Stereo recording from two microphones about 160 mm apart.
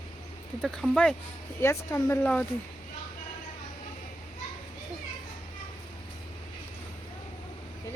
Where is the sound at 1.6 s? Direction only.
15° left (ahead or behind).